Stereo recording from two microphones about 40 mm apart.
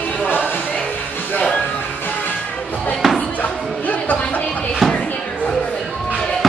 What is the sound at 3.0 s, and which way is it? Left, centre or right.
Music, centre.